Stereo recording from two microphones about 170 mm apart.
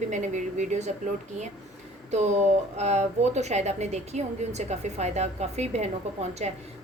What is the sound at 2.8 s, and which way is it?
A woman's voice, 40° right (ahead or behind).